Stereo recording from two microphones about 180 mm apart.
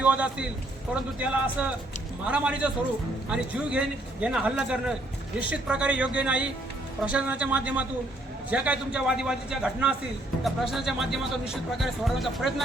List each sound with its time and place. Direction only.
0.0 s a man's voice: 5° right (ahead or behind)